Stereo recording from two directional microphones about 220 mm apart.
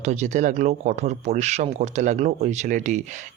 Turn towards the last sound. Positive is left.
turn(degrees=-35)  # may be behind; listen again after turning